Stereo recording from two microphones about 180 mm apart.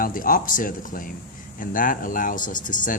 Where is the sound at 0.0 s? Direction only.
50° left (ahead or behind).